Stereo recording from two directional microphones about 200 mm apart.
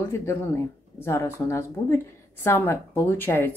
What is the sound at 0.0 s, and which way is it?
Speech, 15° left (ahead or behind).